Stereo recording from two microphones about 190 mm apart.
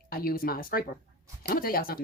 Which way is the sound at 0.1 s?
50° left (ahead or behind).